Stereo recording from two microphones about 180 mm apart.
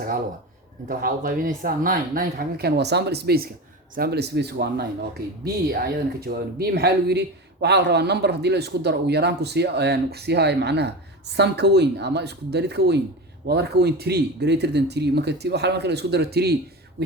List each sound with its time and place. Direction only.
0.9 s speech: 50° right (ahead or behind)